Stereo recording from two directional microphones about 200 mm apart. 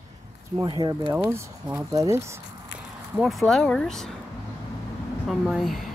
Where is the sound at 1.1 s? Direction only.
15° right (ahead or behind).